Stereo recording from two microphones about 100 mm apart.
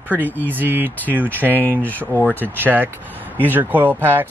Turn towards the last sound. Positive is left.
turn(degrees=-20)  # may be behind; listen again after turning